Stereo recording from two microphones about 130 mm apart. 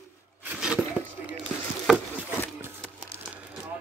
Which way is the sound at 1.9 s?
10° right (ahead or behind).